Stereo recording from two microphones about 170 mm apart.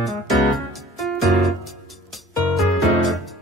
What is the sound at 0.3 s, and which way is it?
Music, centre (ahead or behind).